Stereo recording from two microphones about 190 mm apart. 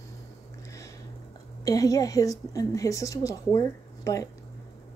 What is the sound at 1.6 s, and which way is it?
Speech, 20° left (ahead or behind).